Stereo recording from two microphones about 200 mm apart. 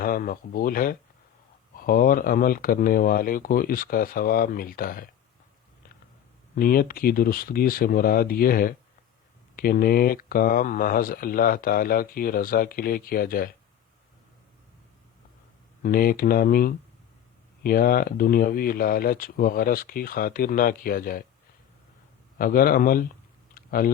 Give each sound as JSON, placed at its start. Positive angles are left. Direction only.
{"t": 0.0, "sound": "speech", "side_deg": 45}
{"t": 6.6, "sound": "speech", "side_deg": 45}
{"t": 15.8, "sound": "speech", "side_deg": 45}
{"t": 22.4, "sound": "speech", "side_deg": 45}
{"t": 23.6, "sound": "clicking", "side_deg": 45}